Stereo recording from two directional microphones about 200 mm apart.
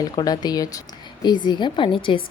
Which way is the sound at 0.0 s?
20° left (ahead or behind).